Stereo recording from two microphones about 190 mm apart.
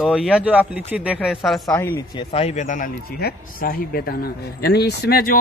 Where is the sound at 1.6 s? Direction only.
15° left (ahead or behind).